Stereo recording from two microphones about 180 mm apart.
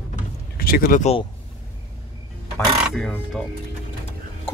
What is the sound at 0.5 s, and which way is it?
Speech, 55° left (ahead or behind).